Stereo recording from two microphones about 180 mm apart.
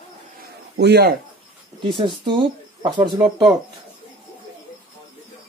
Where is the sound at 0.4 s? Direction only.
65° right (ahead or behind).